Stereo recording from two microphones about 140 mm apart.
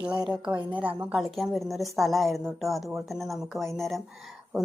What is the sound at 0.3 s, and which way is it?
A woman's voice, 10° right (ahead or behind).